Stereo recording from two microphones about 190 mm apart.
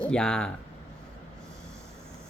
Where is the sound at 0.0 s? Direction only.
5° left (ahead or behind).